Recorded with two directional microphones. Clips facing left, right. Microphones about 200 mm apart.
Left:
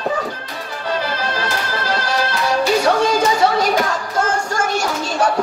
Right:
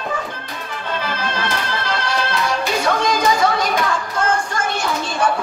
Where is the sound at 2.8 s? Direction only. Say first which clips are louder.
Left 2 dB; 35° left (ahead or behind).